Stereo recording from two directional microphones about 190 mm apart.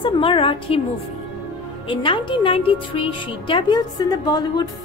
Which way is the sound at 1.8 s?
25° left (ahead or behind).